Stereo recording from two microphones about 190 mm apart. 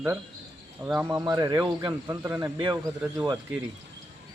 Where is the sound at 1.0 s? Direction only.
20° right (ahead or behind).